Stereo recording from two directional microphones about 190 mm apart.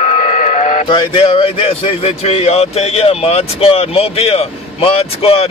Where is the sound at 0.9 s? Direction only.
30° left (ahead or behind).